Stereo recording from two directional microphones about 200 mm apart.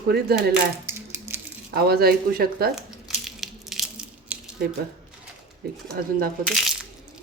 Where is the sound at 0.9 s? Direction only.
10° right (ahead or behind).